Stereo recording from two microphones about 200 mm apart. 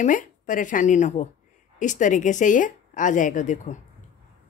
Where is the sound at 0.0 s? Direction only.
40° left (ahead or behind).